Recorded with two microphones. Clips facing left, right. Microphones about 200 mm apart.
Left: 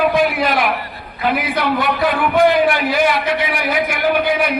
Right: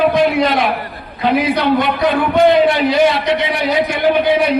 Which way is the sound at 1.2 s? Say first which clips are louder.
Right 4 dB; 25° right (ahead or behind).